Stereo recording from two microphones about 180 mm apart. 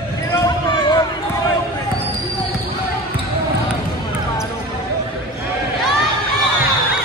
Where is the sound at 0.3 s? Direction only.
25° left (ahead or behind).